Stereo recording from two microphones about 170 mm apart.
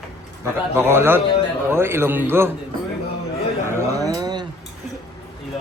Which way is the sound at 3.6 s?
15° right (ahead or behind).